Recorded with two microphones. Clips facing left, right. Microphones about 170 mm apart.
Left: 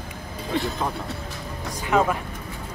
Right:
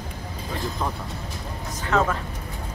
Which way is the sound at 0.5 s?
75° left (ahead or behind).